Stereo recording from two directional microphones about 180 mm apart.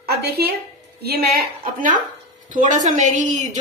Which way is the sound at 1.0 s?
50° right (ahead or behind).